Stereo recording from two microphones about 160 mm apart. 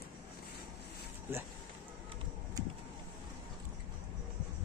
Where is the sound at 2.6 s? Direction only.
20° right (ahead or behind).